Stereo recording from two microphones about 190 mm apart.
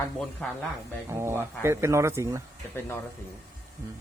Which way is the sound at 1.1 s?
15° right (ahead or behind).